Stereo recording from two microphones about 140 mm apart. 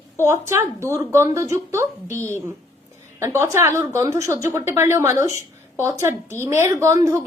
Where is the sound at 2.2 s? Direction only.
15° left (ahead or behind).